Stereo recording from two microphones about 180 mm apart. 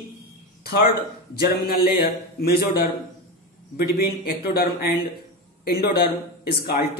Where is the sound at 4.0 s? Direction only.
60° left (ahead or behind).